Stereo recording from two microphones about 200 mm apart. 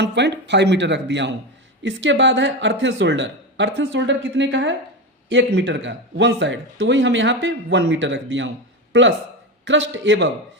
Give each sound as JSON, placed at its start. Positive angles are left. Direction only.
{"t": 0.0, "sound": "a man's voice", "side_deg": -60}